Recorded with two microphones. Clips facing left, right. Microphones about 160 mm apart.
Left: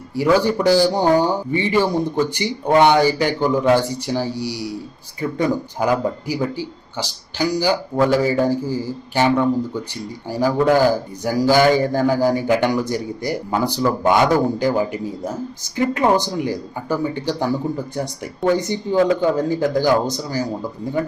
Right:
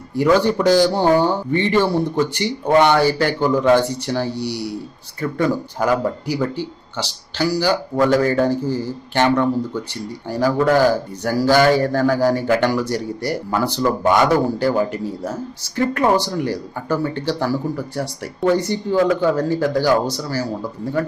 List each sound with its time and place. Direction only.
0.1 s a man's voice: 10° left (ahead or behind)